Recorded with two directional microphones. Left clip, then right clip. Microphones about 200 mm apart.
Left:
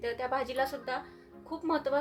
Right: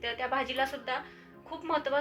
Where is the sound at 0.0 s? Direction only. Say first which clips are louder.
Right 1 dB; 65° left (ahead or behind).